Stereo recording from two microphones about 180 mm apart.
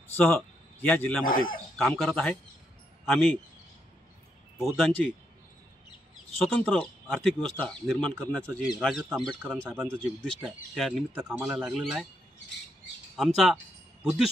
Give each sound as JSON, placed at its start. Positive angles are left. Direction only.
{"t": 0.2, "sound": "speech", "side_deg": 10}
{"t": 1.2, "sound": "speech", "side_deg": 50}
{"t": 1.8, "sound": "speech", "side_deg": 5}
{"t": 4.6, "sound": "speech", "side_deg": 0}
{"t": 6.4, "sound": "speech", "side_deg": 5}
{"t": 13.1, "sound": "speech", "side_deg": 0}